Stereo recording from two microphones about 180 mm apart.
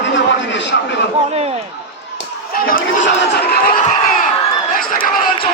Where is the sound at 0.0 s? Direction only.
85° left.